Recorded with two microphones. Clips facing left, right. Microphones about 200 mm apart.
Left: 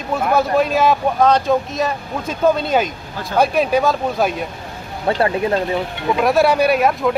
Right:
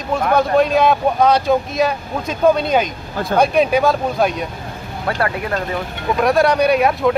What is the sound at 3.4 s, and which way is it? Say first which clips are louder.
Speech: right 1 dB; 5° left (ahead or behind).